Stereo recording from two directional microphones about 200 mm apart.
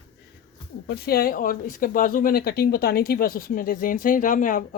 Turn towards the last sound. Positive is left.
turn(degrees=40)  # may be behind; listen again after turning